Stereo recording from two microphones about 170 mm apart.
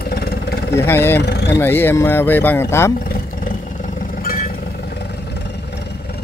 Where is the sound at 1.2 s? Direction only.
85° left.